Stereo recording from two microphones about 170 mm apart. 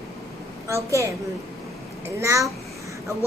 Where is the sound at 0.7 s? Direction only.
15° right (ahead or behind).